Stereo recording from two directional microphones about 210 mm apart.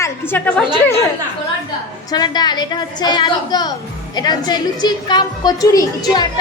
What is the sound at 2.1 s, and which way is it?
A woman's voice, 20° left (ahead or behind).